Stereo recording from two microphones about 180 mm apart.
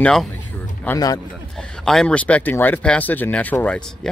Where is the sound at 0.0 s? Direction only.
5° left (ahead or behind).